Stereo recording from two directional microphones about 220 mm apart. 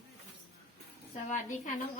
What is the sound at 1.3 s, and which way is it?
Speech, 35° left (ahead or behind).